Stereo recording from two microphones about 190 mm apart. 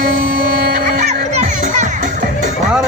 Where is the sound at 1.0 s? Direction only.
35° right (ahead or behind).